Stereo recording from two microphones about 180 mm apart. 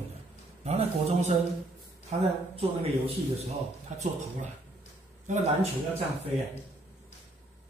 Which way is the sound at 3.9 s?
40° right (ahead or behind).